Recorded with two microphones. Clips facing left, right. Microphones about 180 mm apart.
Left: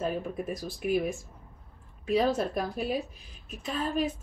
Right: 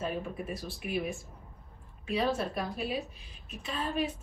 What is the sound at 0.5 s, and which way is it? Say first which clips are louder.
A woman's voice: left 7 dB; 40° left (ahead or behind).